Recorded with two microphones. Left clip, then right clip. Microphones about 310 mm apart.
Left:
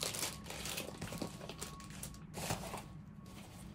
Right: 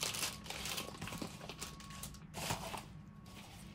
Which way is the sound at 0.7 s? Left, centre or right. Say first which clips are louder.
Even; centre.